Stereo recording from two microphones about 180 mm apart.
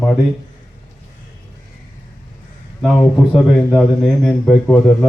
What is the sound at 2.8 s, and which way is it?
A man's voice, 10° left (ahead or behind).